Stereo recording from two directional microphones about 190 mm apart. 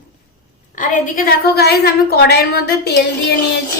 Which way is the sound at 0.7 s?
40° left (ahead or behind).